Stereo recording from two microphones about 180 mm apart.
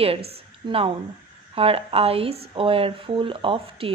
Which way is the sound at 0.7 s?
30° right (ahead or behind).